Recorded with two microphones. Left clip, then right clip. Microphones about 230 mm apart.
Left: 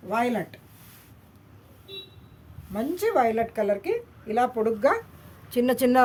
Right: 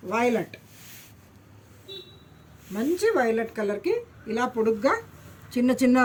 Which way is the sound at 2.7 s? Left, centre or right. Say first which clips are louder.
Even; left.